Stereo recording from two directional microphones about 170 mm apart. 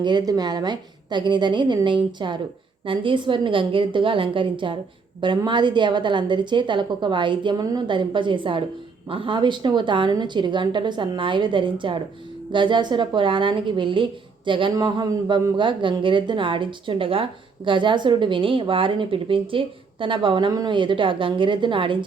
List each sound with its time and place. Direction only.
0.0 s a woman's voice: 25° right (ahead or behind)